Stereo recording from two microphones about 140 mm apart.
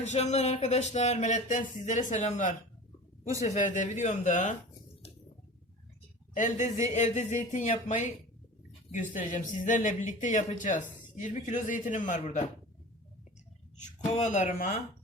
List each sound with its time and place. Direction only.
0.0 s speech: 55° left (ahead or behind)
6.3 s speech: 60° left (ahead or behind)
14.2 s speech: 60° left (ahead or behind)